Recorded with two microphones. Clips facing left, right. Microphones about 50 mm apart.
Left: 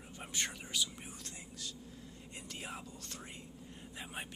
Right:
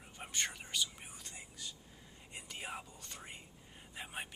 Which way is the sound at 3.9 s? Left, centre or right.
Centre.